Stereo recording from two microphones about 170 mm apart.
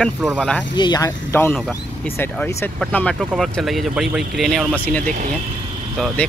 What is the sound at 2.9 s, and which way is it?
Speech, 5° left (ahead or behind).